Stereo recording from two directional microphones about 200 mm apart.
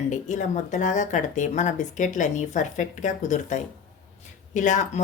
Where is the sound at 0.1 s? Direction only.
35° left (ahead or behind).